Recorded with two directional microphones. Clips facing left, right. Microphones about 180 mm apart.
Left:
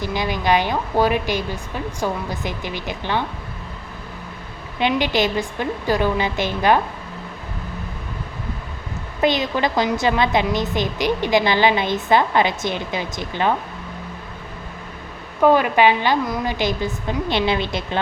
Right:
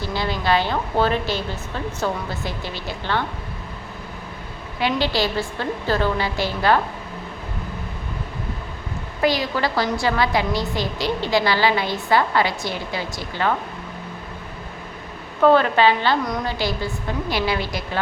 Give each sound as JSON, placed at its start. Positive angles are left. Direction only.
{"t": 0.0, "sound": "speech", "side_deg": 15}
{"t": 4.8, "sound": "speech", "side_deg": 15}
{"t": 9.2, "sound": "a woman's voice", "side_deg": 20}
{"t": 15.4, "sound": "a woman's voice", "side_deg": 15}